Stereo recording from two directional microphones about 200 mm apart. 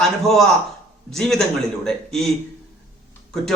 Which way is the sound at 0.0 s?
Centre (ahead or behind).